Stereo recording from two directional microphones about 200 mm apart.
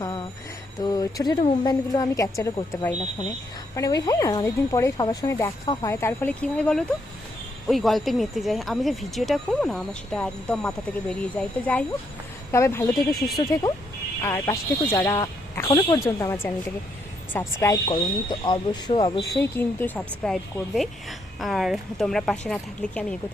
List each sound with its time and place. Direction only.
0.0 s a sound: 25° left (ahead or behind)
0.8 s speech: 20° left (ahead or behind)
3.8 s speech: 20° left (ahead or behind)
17.6 s speech: 20° left (ahead or behind)